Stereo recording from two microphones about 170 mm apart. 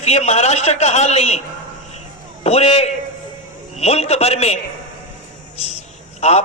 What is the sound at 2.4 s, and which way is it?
A man's voice, 40° left (ahead or behind).